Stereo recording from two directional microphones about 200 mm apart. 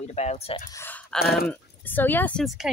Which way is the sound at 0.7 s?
10° left (ahead or behind).